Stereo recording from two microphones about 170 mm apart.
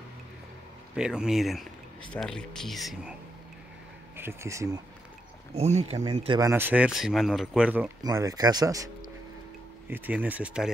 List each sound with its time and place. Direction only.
0.9 s speech: 5° right (ahead or behind)
4.2 s speech: 15° right (ahead or behind)
5.5 s speech: 40° right (ahead or behind)
6.4 s speech: 10° right (ahead or behind)
8.0 s a man's voice: 20° right (ahead or behind)